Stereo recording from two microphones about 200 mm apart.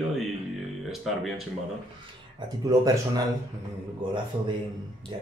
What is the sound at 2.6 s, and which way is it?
Speech, 20° right (ahead or behind).